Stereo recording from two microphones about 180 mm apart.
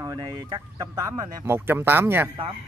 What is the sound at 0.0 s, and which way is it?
Speech, 20° right (ahead or behind).